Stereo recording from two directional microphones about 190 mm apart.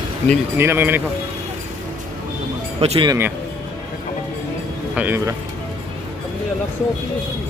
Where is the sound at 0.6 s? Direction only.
10° right (ahead or behind).